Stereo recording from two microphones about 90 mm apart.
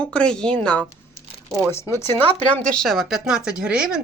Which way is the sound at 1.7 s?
30° left (ahead or behind).